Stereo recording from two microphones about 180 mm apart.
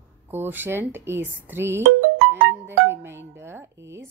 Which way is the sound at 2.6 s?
15° right (ahead or behind).